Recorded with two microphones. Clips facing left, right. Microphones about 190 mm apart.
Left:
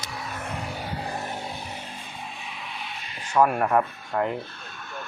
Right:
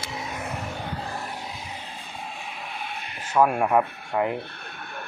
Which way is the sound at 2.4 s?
50° right (ahead or behind).